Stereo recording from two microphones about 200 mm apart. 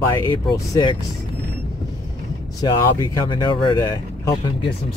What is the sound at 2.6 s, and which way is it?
Speech, 20° left (ahead or behind).